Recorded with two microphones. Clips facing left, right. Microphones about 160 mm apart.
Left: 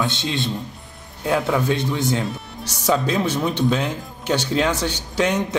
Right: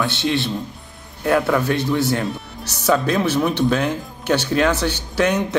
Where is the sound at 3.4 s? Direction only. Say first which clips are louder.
Right 2 dB; 20° left (ahead or behind).